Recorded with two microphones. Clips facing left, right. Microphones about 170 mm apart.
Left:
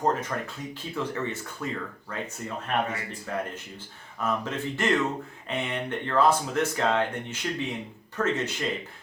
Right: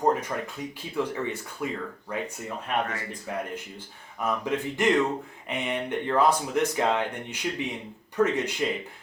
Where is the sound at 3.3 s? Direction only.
15° right (ahead or behind).